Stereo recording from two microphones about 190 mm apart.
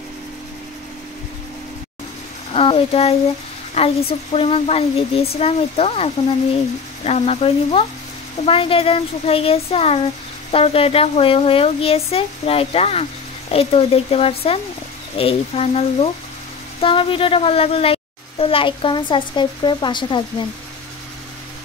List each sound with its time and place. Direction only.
2.5 s a woman's voice: 30° left (ahead or behind)